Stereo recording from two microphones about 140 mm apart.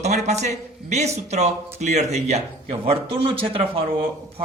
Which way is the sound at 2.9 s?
40° right (ahead or behind).